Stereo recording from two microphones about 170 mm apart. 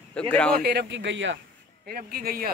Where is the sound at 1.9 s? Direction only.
60° right (ahead or behind).